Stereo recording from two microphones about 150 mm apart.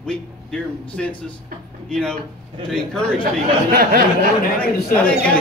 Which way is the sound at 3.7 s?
80° right.